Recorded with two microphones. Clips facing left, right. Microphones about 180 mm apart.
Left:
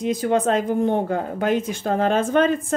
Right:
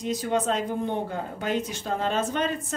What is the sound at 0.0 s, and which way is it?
Speech, 55° left (ahead or behind).